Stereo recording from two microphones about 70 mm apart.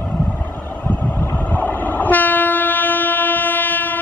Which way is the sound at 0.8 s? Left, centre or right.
Left.